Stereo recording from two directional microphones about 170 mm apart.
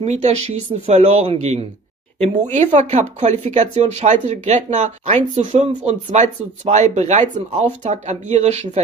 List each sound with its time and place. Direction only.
0.0 s speech: 40° right (ahead or behind)